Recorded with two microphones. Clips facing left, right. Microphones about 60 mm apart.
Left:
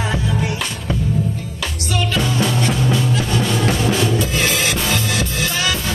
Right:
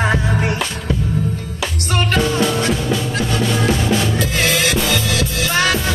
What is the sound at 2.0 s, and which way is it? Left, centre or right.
Music, right.